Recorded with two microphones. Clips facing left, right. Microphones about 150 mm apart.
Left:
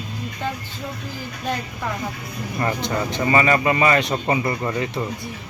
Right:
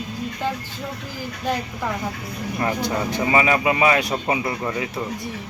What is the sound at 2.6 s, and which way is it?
Speech, 10° right (ahead or behind).